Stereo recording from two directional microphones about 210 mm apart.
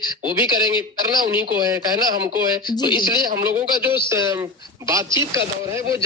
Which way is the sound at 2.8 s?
20° left (ahead or behind).